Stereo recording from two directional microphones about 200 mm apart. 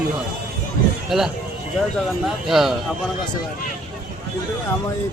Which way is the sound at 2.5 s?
Centre (ahead or behind).